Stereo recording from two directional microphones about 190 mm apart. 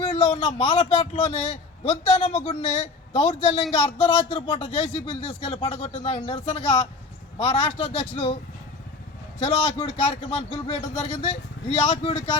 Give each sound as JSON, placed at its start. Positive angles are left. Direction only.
{"t": 0.0, "sound": "a man's voice", "side_deg": 35}
{"t": 9.4, "sound": "a man's voice", "side_deg": 35}